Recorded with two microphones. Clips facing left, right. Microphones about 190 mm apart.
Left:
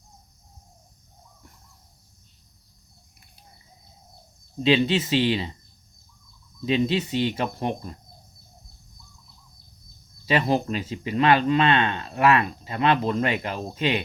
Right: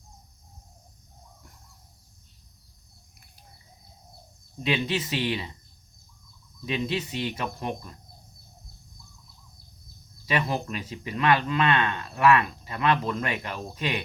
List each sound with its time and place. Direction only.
4.6 s speech: 25° left (ahead or behind)
6.7 s speech: 30° left (ahead or behind)
10.2 s speech: 30° left (ahead or behind)